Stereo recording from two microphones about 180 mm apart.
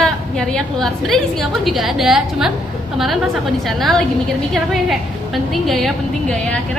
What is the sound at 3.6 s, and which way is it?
A woman's voice, centre (ahead or behind).